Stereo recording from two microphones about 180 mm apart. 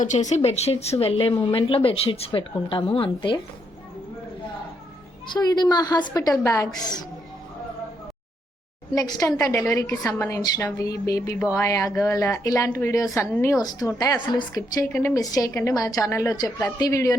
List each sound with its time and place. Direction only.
0.0 s a woman's voice: 40° left (ahead or behind)
5.3 s a woman's voice: 20° left (ahead or behind)
9.0 s a woman's voice: 20° left (ahead or behind)